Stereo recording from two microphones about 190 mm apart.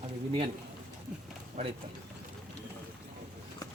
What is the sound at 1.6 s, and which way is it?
Speech, 35° right (ahead or behind).